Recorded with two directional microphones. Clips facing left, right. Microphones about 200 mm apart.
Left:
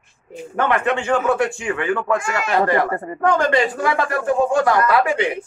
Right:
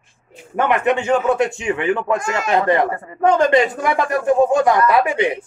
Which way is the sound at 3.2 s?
20° right (ahead or behind).